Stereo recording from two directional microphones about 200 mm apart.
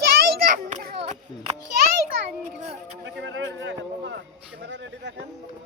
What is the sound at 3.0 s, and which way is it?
Speech, 65° right (ahead or behind).